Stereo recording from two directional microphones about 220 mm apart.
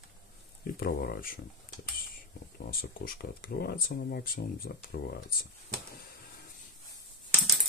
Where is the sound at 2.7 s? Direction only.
40° left (ahead or behind).